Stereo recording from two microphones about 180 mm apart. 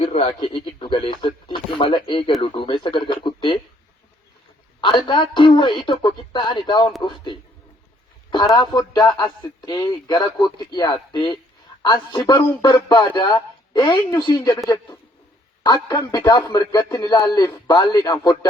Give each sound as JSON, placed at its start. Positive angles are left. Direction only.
{"t": 0.0, "sound": "speech", "side_deg": 35}
{"t": 4.8, "sound": "speech", "side_deg": 25}
{"t": 15.6, "sound": "speech", "side_deg": 25}